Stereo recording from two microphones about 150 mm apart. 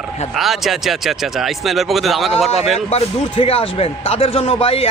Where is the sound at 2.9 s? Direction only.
40° left (ahead or behind).